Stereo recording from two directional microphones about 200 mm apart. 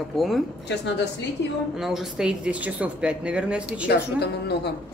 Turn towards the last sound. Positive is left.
turn(degrees=55)  # may be behind; listen again after turning